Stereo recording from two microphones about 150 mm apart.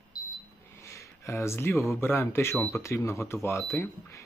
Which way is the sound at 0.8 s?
20° left (ahead or behind).